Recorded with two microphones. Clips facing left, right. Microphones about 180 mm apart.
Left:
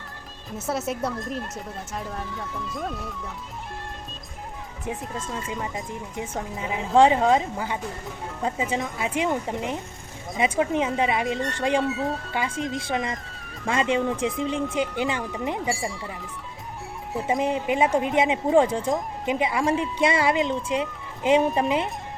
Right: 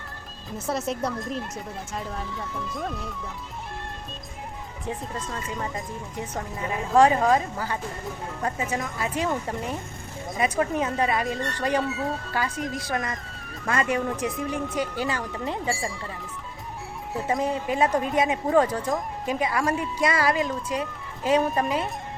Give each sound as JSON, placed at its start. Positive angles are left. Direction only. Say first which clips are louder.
{"t": 0.7, "sound": "speech", "louder": "even", "side_deg": 5}
{"t": 4.9, "sound": "speech", "louder": "left 1 dB", "side_deg": 10}
{"t": 6.9, "sound": "speech", "louder": "left 1 dB", "side_deg": 25}
{"t": 11.8, "sound": "speech", "louder": "left 2 dB", "side_deg": 0}
{"t": 12.3, "sound": "speech", "louder": "left 1 dB", "side_deg": 20}
{"t": 17.2, "sound": "speech", "louder": "left 2 dB", "side_deg": 20}